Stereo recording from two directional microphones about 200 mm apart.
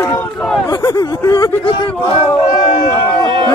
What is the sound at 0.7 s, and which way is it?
Speech, 20° left (ahead or behind).